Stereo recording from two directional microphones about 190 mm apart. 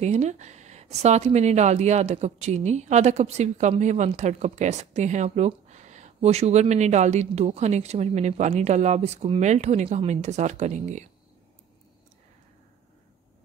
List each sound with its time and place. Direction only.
0.0 s speech: 35° right (ahead or behind)